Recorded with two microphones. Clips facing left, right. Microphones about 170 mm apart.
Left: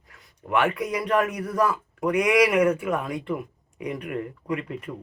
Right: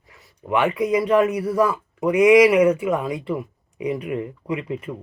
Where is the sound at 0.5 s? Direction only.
15° right (ahead or behind).